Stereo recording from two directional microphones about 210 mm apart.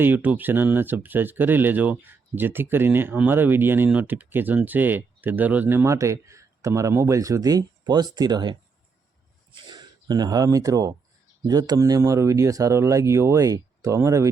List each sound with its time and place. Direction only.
0.0 s speech: 10° right (ahead or behind)